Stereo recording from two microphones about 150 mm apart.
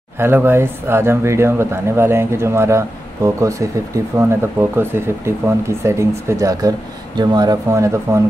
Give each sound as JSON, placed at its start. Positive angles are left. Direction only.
{"t": 0.2, "sound": "speech", "side_deg": -15}